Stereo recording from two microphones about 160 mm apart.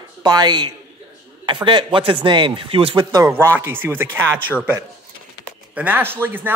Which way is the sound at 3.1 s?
20° right (ahead or behind).